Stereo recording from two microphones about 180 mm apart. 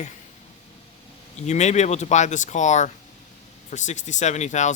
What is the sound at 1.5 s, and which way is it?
Speech, 40° left (ahead or behind).